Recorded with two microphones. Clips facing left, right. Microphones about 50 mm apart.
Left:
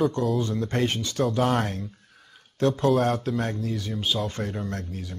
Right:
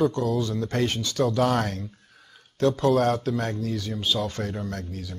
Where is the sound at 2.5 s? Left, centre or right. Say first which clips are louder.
Right 1 dB; left.